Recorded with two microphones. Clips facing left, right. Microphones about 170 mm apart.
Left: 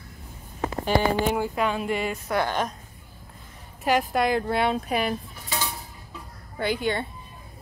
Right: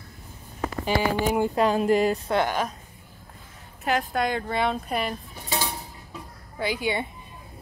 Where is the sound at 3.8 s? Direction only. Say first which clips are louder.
Left 2 dB; 5° left (ahead or behind).